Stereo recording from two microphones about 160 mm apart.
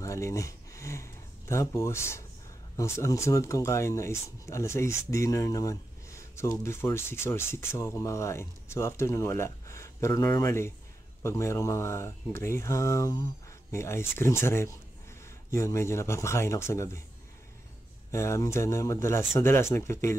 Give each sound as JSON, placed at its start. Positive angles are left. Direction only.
{"t": 0.0, "sound": "a sound", "side_deg": 20}
{"t": 2.8, "sound": "speech", "side_deg": 20}
{"t": 18.1, "sound": "speech", "side_deg": 15}